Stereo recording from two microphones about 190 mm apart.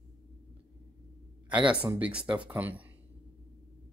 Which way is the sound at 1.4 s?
5° right (ahead or behind).